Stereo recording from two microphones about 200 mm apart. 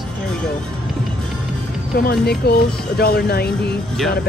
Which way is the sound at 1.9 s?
50° left (ahead or behind).